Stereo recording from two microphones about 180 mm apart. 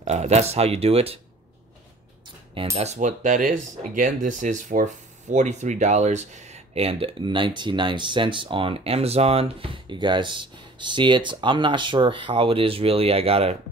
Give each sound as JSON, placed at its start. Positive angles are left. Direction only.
{"t": 0.0, "sound": "speech", "side_deg": -40}
{"t": 2.5, "sound": "speech", "side_deg": -35}